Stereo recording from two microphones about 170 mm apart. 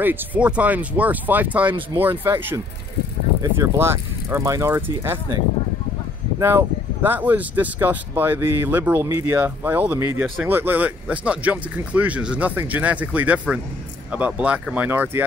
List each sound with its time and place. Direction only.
0.0 s speech: 10° right (ahead or behind)
6.4 s speech: 10° right (ahead or behind)